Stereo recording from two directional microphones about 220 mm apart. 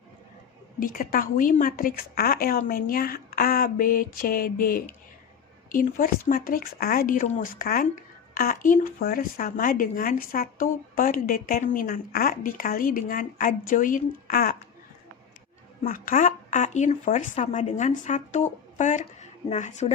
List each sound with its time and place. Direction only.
0.8 s speech: 40° left (ahead or behind)
15.8 s speech: 40° left (ahead or behind)